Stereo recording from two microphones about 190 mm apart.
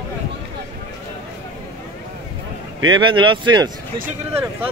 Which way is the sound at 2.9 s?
25° right (ahead or behind).